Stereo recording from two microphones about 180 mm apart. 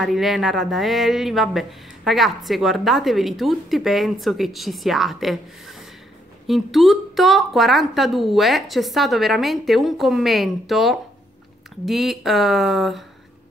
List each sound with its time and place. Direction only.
0.0 s speech: centre (ahead or behind)